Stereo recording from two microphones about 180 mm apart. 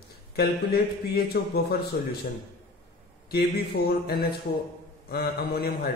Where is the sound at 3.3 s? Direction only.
60° left (ahead or behind).